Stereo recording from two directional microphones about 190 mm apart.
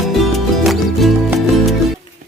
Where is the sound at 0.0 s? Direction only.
Centre (ahead or behind).